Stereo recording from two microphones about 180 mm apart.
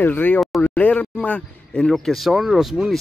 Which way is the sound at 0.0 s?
10° left (ahead or behind).